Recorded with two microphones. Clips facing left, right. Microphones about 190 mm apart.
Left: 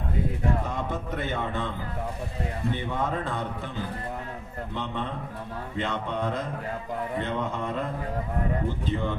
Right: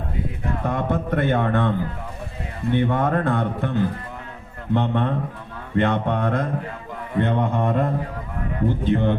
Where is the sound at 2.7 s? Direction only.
60° right (ahead or behind).